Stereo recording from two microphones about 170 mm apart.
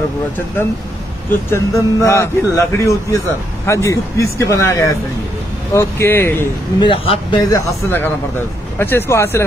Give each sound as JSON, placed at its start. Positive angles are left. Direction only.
{"t": 1.5, "sound": "a man's voice", "side_deg": 15}
{"t": 6.8, "sound": "a man's voice", "side_deg": 30}